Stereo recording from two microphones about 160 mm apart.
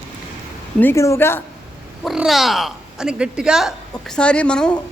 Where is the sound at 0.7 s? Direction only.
15° left (ahead or behind).